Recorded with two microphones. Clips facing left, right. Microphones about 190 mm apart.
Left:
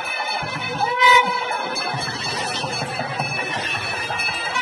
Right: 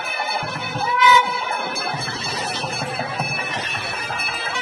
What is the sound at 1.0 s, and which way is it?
Music, 25° left (ahead or behind).